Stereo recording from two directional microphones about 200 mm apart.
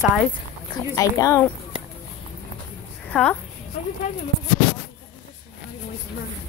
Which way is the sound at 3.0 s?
5° left (ahead or behind).